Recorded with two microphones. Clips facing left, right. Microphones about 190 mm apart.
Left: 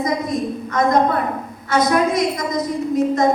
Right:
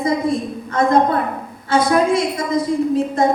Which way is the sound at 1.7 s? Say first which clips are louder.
Right 2 dB; 30° right (ahead or behind).